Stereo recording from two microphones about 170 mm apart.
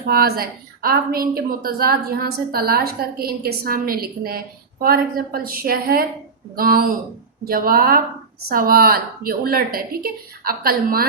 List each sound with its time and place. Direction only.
0.0 s a woman's voice: 65° right (ahead or behind)